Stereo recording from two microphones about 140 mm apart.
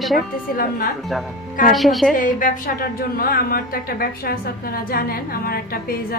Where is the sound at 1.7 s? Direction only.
Centre (ahead or behind).